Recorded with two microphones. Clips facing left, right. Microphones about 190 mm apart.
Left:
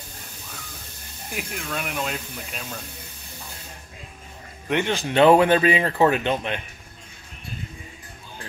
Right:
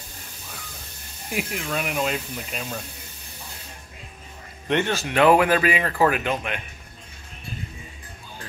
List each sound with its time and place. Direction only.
1.3 s speech: 5° right (ahead or behind)
4.6 s speech: 15° left (ahead or behind)
5.0 s speech: 25° left (ahead or behind)